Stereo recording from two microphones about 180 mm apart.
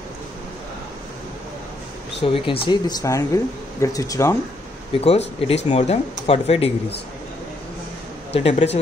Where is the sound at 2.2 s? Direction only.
30° left (ahead or behind).